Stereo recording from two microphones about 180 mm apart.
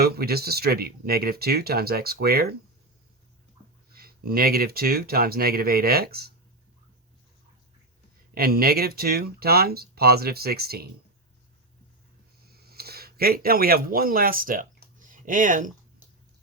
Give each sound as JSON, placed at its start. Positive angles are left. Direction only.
{"t": 0.0, "sound": "speech", "side_deg": -60}
{"t": 3.9, "sound": "speech", "side_deg": -55}
{"t": 8.4, "sound": "speech", "side_deg": -55}
{"t": 12.5, "sound": "speech", "side_deg": -60}